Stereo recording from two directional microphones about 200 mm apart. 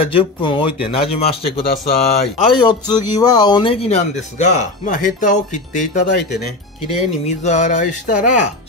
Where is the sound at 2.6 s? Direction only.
20° left (ahead or behind); by 6.1 s 40° left (ahead or behind).